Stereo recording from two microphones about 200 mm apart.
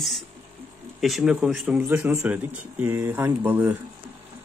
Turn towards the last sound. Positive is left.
turn(degrees=-10)  # may be behind; listen again after turning